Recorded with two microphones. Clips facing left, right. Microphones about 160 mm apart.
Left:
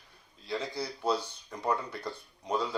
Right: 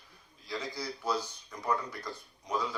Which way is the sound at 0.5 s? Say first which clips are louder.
Left 3 dB; 30° left (ahead or behind).